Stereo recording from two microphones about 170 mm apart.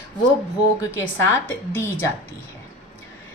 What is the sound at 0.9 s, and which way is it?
Speech, 15° left (ahead or behind).